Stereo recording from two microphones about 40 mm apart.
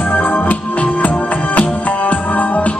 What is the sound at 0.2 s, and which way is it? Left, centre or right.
Music, left.